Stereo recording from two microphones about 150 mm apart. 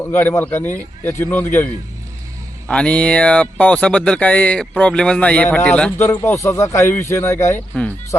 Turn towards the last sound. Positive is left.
turn(degrees=20)  # may be behind; listen again after turning